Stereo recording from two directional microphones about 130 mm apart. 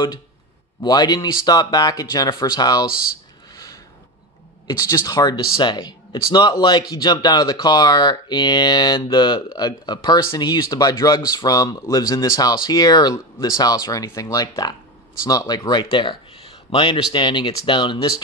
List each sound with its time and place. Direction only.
0.8 s speech: 30° left (ahead or behind)
3.5 s a sound: 30° left (ahead or behind)
4.6 s speech: 25° left (ahead or behind)